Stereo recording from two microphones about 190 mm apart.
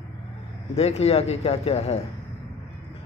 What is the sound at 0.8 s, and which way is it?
Speech, 35° left (ahead or behind).